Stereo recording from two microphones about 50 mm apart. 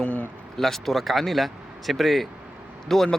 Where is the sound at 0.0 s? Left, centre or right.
Left.